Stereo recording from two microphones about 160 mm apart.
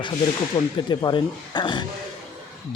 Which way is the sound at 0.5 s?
25° left (ahead or behind).